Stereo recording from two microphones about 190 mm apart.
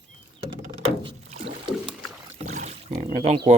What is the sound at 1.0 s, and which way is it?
Rowboat, 35° right (ahead or behind).